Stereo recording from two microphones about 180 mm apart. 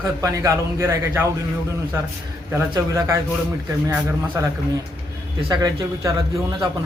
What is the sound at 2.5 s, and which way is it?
Speech, 15° right (ahead or behind).